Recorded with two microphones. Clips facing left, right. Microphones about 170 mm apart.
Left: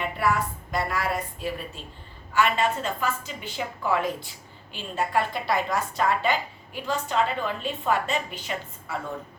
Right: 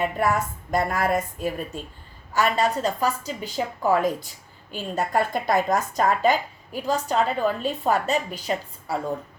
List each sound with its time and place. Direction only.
0.0 s a woman's voice: 45° right (ahead or behind)